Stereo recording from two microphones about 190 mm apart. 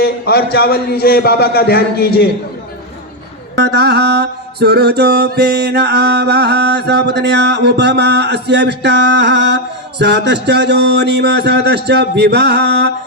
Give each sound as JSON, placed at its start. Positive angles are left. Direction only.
{"t": 0.0, "sound": "a man's voice", "side_deg": 55}
{"t": 3.5, "sound": "mantra", "side_deg": -60}